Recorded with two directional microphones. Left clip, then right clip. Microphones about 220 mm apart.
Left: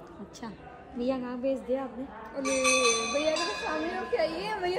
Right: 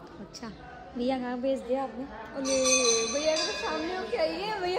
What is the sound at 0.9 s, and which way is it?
Speech, 10° right (ahead or behind).